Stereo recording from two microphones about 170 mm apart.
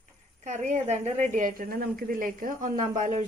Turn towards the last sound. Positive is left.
turn(degrees=-50)  # may be behind; listen again after turning